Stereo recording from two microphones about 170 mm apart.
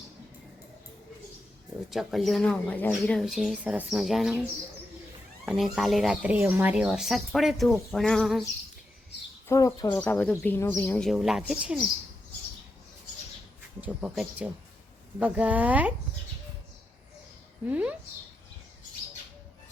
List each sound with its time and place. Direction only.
1.9 s speech: centre (ahead or behind)
5.5 s speech: centre (ahead or behind)
9.5 s speech: 20° left (ahead or behind)
9.9 s speech: 10° left (ahead or behind)
11.1 s speech: centre (ahead or behind)
13.8 s speech: 5° right (ahead or behind)
17.7 s speech: 5° right (ahead or behind)